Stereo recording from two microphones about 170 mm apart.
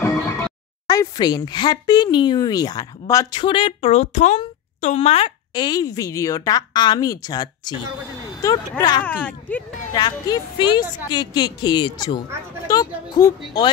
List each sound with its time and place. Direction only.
0.8 s speech: 20° left (ahead or behind)
9.0 s speech: 10° left (ahead or behind)
9.9 s speech: 25° left (ahead or behind)